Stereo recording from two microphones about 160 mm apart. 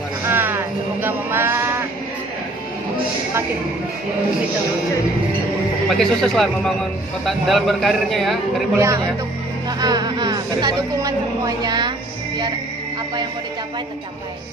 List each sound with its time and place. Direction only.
0.2 s sheep: 15° right (ahead or behind)
5.9 s a man's voice: centre (ahead or behind)
8.7 s speech: 15° right (ahead or behind)